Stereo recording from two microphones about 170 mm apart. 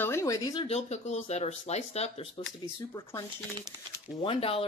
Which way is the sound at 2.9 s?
15° left (ahead or behind).